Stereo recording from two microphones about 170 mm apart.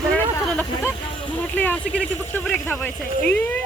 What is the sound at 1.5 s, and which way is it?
Speech, 10° left (ahead or behind).